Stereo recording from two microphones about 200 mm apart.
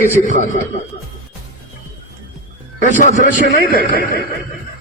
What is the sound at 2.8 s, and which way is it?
A man's voice, 40° left (ahead or behind).